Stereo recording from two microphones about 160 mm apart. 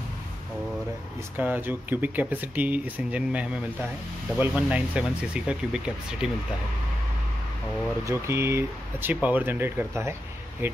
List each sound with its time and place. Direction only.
1.3 s speech: 10° right (ahead or behind)
8.0 s speech: 15° right (ahead or behind)